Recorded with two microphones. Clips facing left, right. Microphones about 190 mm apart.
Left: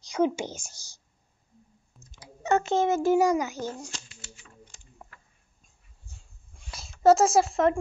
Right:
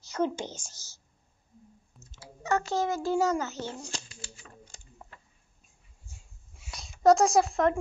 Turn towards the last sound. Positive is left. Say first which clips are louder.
# left 2 dB
turn(degrees=0)  # may be behind; listen again after turning